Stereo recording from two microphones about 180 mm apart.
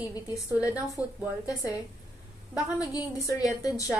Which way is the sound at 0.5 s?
5° right (ahead or behind).